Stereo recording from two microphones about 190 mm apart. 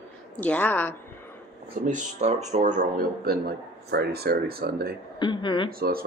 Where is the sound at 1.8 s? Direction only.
40° right (ahead or behind); by 5.0 s 55° right (ahead or behind).